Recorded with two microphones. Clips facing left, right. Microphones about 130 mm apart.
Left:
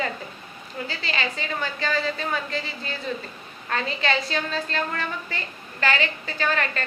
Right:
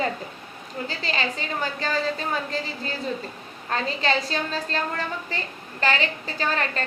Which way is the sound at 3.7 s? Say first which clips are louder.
Right 1 dB; 35° right (ahead or behind).